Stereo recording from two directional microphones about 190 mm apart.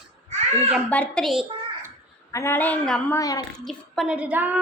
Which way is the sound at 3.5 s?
Centre (ahead or behind).